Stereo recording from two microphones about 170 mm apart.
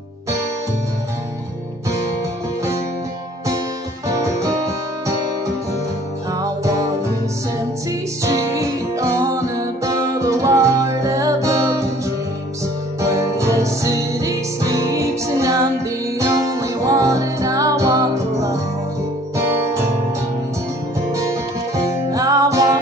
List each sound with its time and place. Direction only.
4.1 s music: 20° right (ahead or behind)
6.3 s music: 20° right (ahead or behind)
8.2 s music: 20° right (ahead or behind)
13.0 s music: 20° right (ahead or behind)
21.1 s music: 20° right (ahead or behind)